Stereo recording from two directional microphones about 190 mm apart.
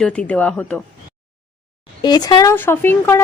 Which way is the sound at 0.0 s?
5° left (ahead or behind).